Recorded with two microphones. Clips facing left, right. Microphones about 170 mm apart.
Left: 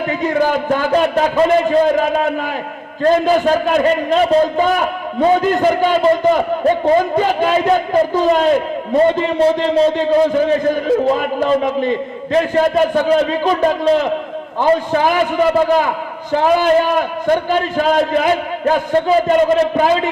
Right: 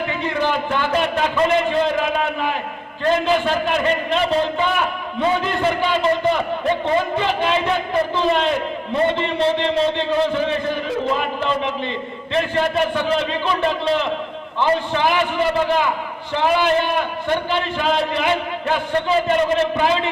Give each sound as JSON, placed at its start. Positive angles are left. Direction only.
{"t": 0.1, "sound": "a man's voice", "side_deg": 40}